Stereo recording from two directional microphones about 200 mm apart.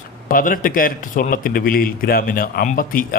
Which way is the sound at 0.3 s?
45° left (ahead or behind).